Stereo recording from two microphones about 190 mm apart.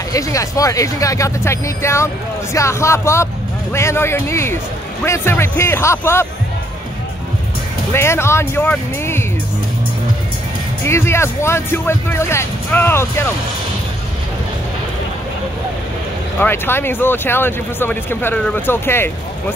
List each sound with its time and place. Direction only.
0.1 s speech: 15° left (ahead or behind)
7.9 s speech: 15° left (ahead or behind)
10.8 s speech: 10° left (ahead or behind)
16.3 s speech: 10° left (ahead or behind)